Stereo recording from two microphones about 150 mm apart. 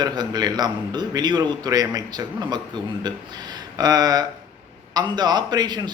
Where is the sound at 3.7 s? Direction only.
25° right (ahead or behind).